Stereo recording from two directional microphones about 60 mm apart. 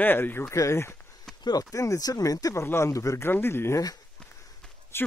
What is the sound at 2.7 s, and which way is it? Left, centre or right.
Speech, left.